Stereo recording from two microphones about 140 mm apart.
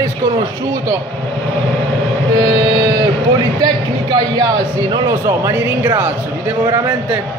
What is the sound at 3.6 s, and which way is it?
Speech, 30° right (ahead or behind).